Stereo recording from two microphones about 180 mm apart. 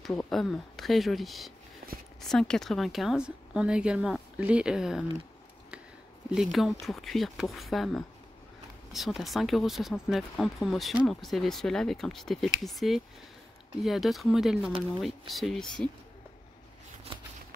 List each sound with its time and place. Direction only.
0.0 s a woman's voice: 5° left (ahead or behind)
1.8 s a sound: 55° right (ahead or behind)
2.2 s a woman's voice: 5° left (ahead or behind)
6.3 s a woman's voice: centre (ahead or behind)